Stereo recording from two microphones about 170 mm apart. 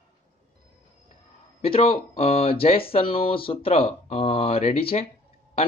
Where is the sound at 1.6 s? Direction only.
35° left (ahead or behind).